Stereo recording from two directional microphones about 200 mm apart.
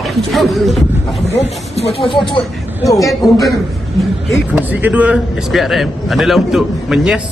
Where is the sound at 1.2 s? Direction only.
60° left (ahead or behind).